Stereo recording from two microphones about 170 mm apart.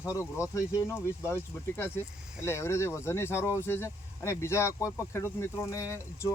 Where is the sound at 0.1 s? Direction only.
20° left (ahead or behind).